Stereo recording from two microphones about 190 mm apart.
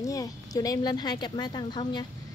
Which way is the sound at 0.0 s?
20° left (ahead or behind).